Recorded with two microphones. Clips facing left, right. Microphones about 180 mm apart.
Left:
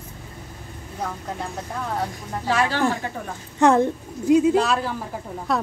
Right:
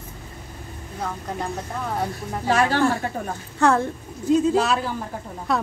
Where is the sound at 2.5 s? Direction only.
45° right (ahead or behind).